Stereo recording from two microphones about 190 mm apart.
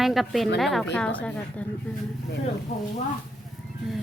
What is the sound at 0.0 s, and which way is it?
A woman's voice, centre (ahead or behind).